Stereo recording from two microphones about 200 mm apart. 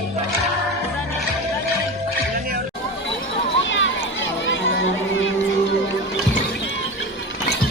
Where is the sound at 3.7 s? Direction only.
70° left (ahead or behind).